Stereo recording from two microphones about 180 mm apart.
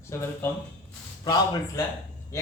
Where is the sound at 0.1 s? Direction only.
15° left (ahead or behind).